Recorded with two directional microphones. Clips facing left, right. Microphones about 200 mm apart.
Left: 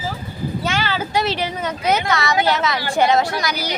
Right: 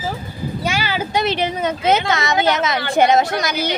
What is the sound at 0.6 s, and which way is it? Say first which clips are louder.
Speech: right 2 dB; 10° right (ahead or behind).